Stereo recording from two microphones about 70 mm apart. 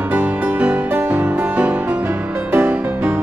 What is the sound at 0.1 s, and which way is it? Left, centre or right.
Music, right.